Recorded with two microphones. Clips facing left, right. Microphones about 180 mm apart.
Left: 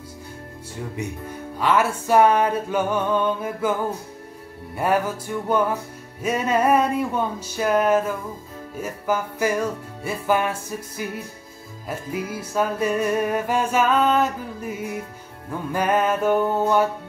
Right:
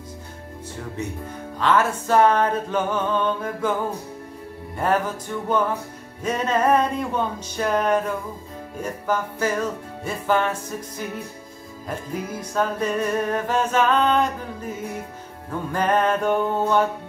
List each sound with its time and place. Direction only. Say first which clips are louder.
1.6 s music: even; 10° left (ahead or behind)
4.7 s music: left 1 dB; 10° left (ahead or behind)
12.1 s music: left 3 dB; 10° left (ahead or behind)